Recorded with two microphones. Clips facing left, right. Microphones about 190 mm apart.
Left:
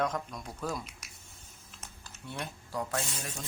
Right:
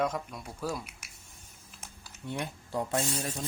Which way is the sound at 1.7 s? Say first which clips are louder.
Even; 15° right (ahead or behind).